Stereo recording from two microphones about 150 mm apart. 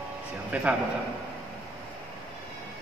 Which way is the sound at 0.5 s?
10° right (ahead or behind).